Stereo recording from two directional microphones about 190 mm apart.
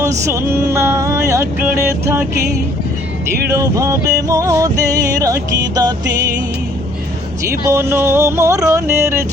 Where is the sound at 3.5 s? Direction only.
15° right (ahead or behind).